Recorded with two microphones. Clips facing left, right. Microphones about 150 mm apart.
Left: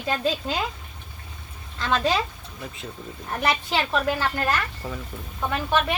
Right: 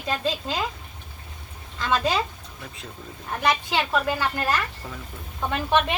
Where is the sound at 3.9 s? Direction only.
10° right (ahead or behind).